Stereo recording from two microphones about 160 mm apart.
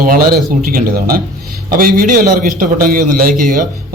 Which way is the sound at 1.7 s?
60° right (ahead or behind).